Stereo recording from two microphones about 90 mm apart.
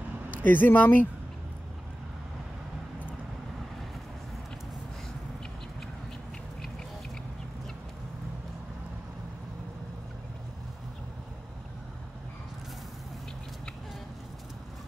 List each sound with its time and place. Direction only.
0.4 s speech: 20° left (ahead or behind)